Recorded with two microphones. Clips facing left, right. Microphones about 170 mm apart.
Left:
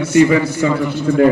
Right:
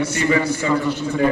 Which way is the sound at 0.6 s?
55° left (ahead or behind).